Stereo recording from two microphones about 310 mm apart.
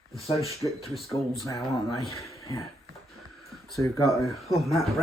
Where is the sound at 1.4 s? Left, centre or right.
Centre.